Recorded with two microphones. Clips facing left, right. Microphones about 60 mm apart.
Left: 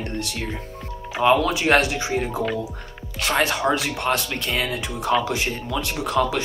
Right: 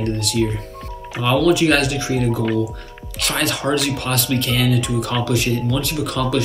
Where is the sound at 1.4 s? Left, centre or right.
Centre.